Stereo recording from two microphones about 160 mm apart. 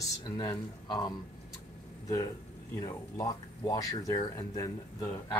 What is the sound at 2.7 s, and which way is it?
Speech, 25° left (ahead or behind).